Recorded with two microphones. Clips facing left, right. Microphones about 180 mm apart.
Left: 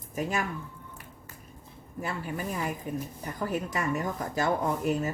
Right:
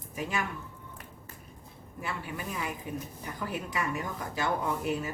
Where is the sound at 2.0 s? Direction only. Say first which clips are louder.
Left 4 dB; 40° left (ahead or behind).